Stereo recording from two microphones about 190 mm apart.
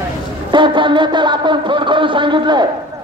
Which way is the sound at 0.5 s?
25° right (ahead or behind).